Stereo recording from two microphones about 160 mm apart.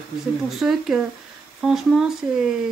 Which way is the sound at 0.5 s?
Centre (ahead or behind).